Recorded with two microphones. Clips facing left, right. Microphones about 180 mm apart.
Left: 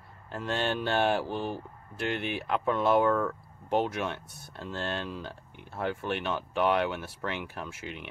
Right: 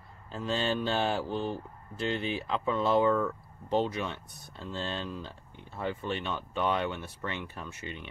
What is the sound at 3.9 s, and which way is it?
Speech, 75° left (ahead or behind).